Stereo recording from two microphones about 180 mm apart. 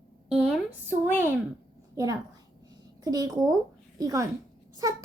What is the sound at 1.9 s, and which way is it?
A woman's voice, 20° right (ahead or behind).